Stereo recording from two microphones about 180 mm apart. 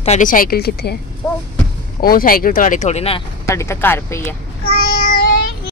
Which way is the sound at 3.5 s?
15° left (ahead or behind).